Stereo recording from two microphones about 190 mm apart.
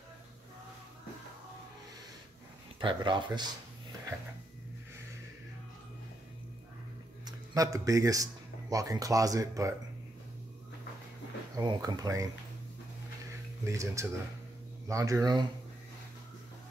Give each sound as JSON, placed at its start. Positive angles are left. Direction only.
{"t": 2.8, "sound": "speech", "side_deg": -25}
{"t": 7.2, "sound": "speech", "side_deg": -20}
{"t": 11.5, "sound": "speech", "side_deg": -20}
{"t": 13.7, "sound": "speech", "side_deg": -15}